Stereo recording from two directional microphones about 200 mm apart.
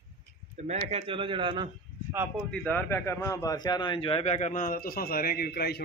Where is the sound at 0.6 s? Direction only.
35° right (ahead or behind); by 2.2 s 20° right (ahead or behind).